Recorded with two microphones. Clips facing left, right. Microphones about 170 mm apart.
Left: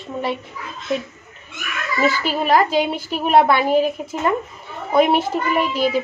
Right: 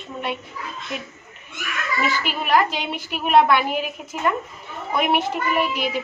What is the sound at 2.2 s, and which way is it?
A woman's voice, 35° left (ahead or behind).